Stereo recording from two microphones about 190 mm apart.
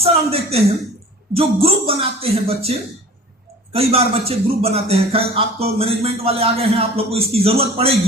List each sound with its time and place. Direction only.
0.0 s a man's voice: 30° right (ahead or behind)